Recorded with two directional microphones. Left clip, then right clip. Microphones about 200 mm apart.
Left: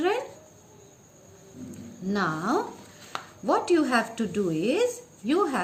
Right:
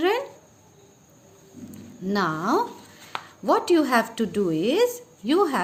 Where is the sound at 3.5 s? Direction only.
45° right (ahead or behind).